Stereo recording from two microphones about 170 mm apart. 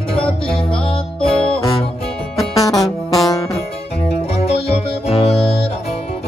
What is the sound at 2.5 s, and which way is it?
Music, 20° left (ahead or behind).